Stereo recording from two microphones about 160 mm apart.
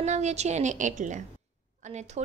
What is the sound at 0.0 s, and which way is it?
A woman's voice, 45° right (ahead or behind).